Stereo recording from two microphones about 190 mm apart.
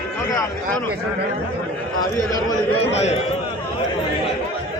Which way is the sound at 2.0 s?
20° left (ahead or behind).